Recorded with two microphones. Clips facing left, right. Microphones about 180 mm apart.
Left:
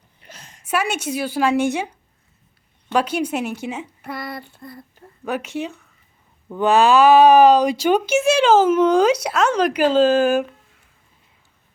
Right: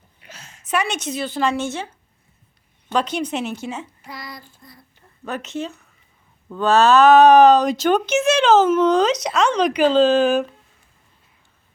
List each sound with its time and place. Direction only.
0.6 s speech: 10° left (ahead or behind)
2.9 s speech: 10° left (ahead or behind)
4.0 s a sound: 55° left (ahead or behind)
5.2 s speech: 10° left (ahead or behind)